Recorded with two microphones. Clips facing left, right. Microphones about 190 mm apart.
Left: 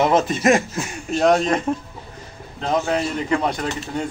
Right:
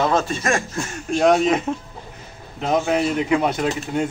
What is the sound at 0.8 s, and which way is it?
Speech, centre (ahead or behind).